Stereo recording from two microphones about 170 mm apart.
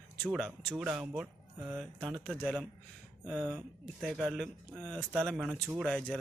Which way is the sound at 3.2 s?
Centre (ahead or behind).